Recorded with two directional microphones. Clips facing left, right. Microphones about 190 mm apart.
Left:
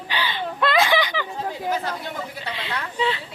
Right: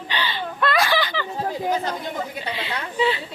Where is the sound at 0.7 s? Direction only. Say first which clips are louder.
Left 2 dB; 20° left (ahead or behind).